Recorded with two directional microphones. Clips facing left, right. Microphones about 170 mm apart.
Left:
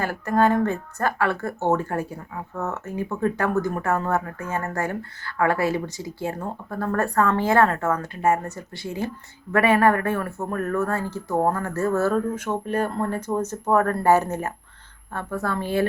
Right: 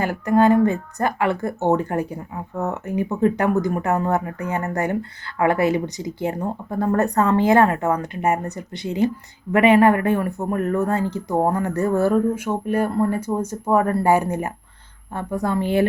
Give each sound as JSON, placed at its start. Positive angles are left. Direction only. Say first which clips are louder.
{"t": 0.0, "sound": "speech", "louder": "right 4 dB", "side_deg": -15}